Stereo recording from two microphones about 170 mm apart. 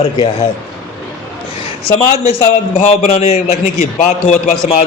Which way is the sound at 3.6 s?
50° left (ahead or behind).